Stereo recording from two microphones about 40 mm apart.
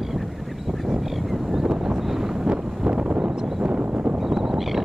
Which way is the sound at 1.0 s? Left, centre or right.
Centre.